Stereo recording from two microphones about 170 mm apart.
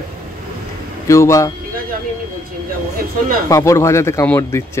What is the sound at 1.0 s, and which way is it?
Speech, 20° left (ahead or behind).